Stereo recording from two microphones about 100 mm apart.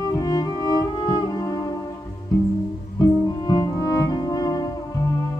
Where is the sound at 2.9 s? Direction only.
40° left (ahead or behind).